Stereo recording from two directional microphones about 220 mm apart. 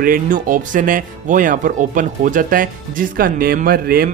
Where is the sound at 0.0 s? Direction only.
40° right (ahead or behind).